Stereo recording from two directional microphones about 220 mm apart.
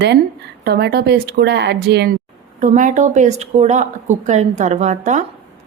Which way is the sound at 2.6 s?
35° right (ahead or behind).